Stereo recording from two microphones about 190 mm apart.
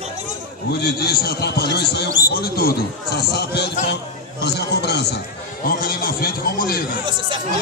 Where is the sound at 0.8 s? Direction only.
55° left (ahead or behind).